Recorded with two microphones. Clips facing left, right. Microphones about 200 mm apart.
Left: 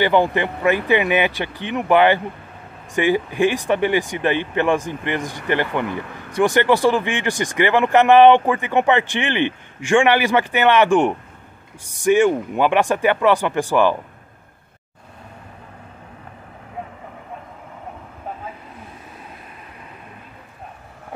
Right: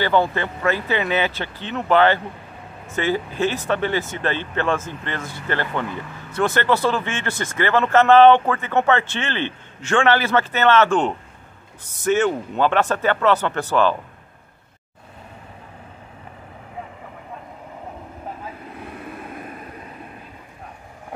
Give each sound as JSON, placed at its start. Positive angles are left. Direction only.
{"t": 0.0, "sound": "speech", "side_deg": 15}